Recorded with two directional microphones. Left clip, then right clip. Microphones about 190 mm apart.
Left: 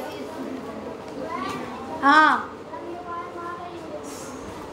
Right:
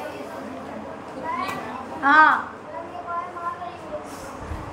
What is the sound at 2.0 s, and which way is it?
Speech, 40° left (ahead or behind).